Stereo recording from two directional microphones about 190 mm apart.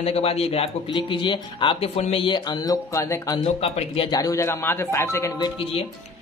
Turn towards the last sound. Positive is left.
turn(degrees=15)  # may be behind; listen again after turning